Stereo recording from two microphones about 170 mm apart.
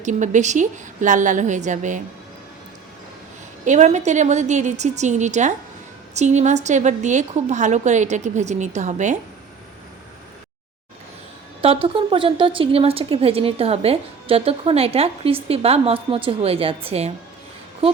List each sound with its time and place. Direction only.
0.0 s a woman's voice: 45° right (ahead or behind)
3.7 s a woman's voice: 45° right (ahead or behind)
11.6 s a woman's voice: 30° right (ahead or behind)